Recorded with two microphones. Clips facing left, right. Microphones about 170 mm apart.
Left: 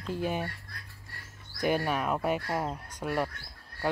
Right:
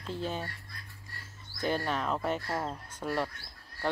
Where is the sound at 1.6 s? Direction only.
15° left (ahead or behind).